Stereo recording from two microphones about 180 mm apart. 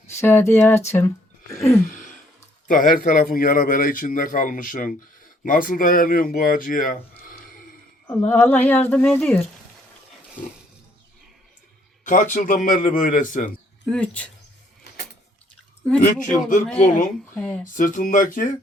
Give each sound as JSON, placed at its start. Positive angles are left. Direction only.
{"t": 0.1, "sound": "speech", "side_deg": 15}
{"t": 1.9, "sound": "a sound", "side_deg": 50}
{"t": 2.6, "sound": "a man's voice", "side_deg": 50}
{"t": 8.3, "sound": "speech", "side_deg": 10}
{"t": 12.0, "sound": "a man's voice", "side_deg": 45}
{"t": 13.9, "sound": "speech", "side_deg": 5}
{"t": 16.0, "sound": "a man's voice", "side_deg": 45}
{"t": 17.3, "sound": "speech", "side_deg": 10}
{"t": 17.7, "sound": "a man's voice", "side_deg": 45}